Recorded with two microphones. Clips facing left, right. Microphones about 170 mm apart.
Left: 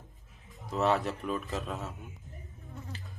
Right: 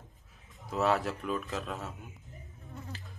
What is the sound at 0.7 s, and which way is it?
Speech, centre (ahead or behind).